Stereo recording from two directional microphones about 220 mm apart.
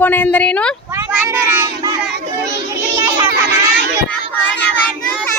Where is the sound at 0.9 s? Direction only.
15° right (ahead or behind).